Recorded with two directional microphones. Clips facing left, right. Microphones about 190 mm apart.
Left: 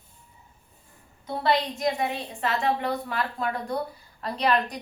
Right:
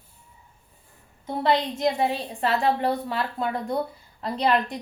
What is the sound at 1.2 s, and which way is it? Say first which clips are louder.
A woman's voice: right 2 dB; 25° right (ahead or behind).